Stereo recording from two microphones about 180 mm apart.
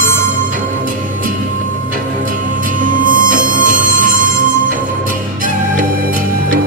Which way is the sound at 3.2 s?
50° right (ahead or behind).